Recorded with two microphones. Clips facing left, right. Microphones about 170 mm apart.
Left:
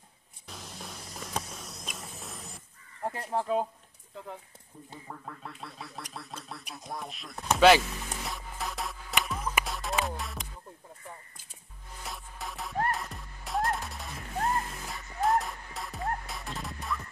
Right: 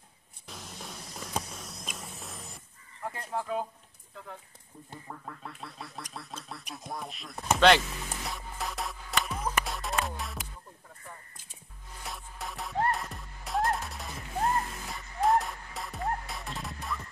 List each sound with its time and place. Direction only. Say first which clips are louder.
0.5 s music: even; centre (ahead or behind)
3.0 s speech: left 3 dB; 35° left (ahead or behind)
5.0 s a sound: even; centre (ahead or behind)
6.1 s speech: even; centre (ahead or behind)
9.2 s music: right 1 dB; centre (ahead or behind)
12.0 s music: even; centre (ahead or behind)